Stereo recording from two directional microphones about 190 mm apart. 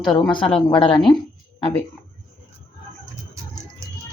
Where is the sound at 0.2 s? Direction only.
25° left (ahead or behind).